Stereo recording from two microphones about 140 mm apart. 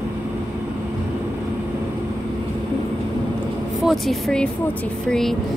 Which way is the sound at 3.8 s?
Centre (ahead or behind).